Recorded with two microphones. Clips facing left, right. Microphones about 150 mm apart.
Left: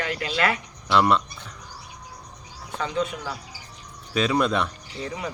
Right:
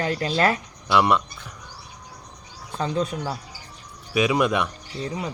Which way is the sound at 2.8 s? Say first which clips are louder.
Right 2 dB; 35° right (ahead or behind).